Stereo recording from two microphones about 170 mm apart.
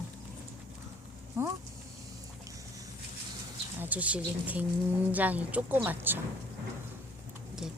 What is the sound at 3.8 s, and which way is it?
A woman's voice, 10° right (ahead or behind).